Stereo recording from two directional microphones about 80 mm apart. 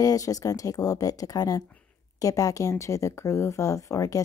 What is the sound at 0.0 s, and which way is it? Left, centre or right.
Speech, left.